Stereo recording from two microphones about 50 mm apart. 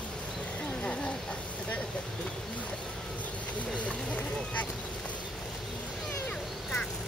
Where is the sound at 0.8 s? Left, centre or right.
Left.